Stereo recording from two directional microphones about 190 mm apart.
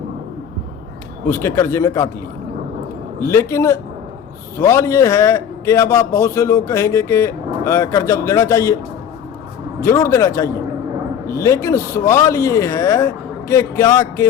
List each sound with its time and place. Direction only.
1.3 s a man's voice: 15° left (ahead or behind)
3.2 s a man's voice: 15° left (ahead or behind)
9.8 s a man's voice: 15° left (ahead or behind)